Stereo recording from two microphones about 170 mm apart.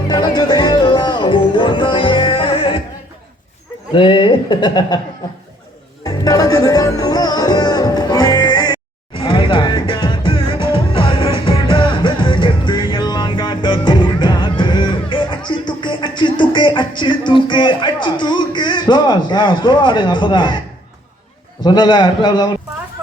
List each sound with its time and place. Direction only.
0.1 s music: 25° left (ahead or behind)
3.9 s speech: 30° left (ahead or behind)
6.1 s music: 20° left (ahead or behind)
21.6 s speech: 25° left (ahead or behind)